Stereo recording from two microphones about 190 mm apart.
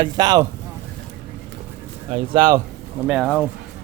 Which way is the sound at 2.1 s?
25° right (ahead or behind).